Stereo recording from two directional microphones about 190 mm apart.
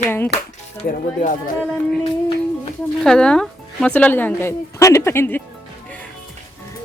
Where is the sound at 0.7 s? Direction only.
45° left (ahead or behind).